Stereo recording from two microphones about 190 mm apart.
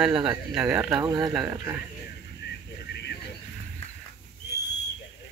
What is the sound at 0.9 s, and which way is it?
Speech, 20° right (ahead or behind).